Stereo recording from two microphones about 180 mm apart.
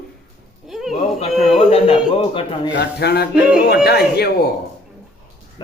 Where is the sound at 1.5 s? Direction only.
30° left (ahead or behind).